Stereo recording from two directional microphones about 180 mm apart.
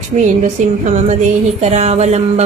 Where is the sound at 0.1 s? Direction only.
35° right (ahead or behind).